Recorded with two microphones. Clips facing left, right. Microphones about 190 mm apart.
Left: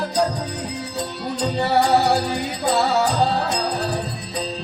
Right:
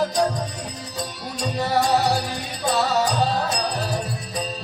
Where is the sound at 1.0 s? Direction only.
65° left (ahead or behind).